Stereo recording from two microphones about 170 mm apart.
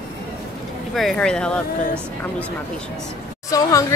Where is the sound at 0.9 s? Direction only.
Centre (ahead or behind).